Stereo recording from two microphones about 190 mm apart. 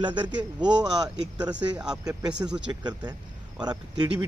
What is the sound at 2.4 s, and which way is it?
Speech, 5° right (ahead or behind).